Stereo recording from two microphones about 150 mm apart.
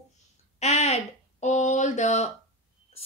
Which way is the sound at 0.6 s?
45° left (ahead or behind).